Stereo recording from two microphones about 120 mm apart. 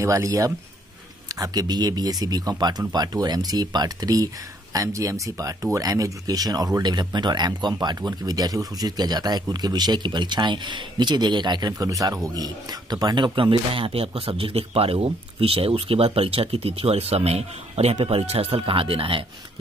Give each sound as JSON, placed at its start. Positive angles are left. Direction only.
{"t": 0.0, "sound": "speech", "side_deg": -25}